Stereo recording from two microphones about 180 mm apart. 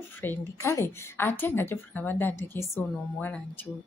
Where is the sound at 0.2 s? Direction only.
15° left (ahead or behind).